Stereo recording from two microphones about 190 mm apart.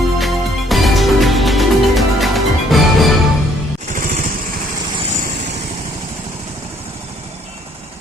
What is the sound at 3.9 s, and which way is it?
Lawn mower, 45° right (ahead or behind).